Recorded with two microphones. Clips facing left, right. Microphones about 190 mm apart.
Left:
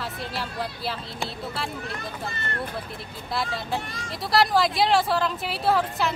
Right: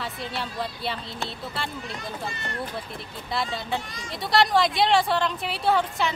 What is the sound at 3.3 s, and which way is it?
Speech, centre (ahead or behind).